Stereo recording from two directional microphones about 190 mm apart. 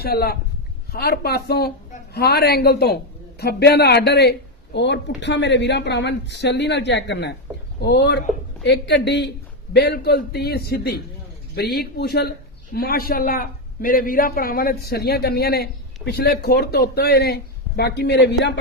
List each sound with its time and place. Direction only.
0.0 s a man's voice: 55° left (ahead or behind)